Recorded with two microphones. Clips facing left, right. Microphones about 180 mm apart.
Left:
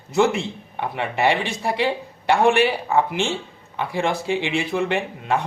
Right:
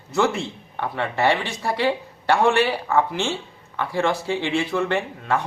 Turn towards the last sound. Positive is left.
turn(degrees=15)  # may be behind; listen again after turning